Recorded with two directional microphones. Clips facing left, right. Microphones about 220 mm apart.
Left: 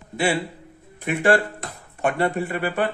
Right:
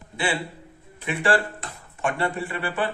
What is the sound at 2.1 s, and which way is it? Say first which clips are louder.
Speech: left 4 dB; 40° left (ahead or behind).